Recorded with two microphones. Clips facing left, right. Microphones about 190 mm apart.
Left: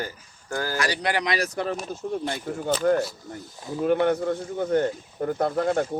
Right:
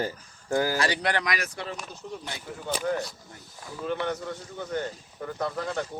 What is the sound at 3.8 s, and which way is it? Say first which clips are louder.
Speech: left 9 dB; 55° left (ahead or behind).